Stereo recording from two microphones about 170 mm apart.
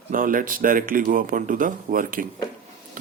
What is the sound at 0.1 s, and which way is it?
Speech, 55° right (ahead or behind).